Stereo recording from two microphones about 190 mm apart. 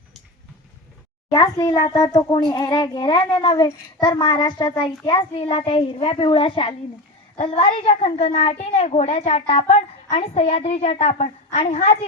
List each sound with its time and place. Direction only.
1.3 s a child's voice: 20° left (ahead or behind)